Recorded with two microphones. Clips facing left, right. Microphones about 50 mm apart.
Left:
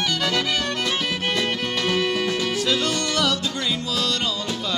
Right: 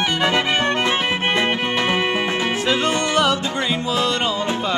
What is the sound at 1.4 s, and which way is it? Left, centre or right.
Music, right.